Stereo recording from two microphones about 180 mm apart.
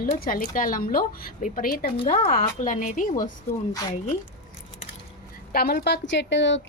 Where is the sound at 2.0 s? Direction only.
35° left (ahead or behind).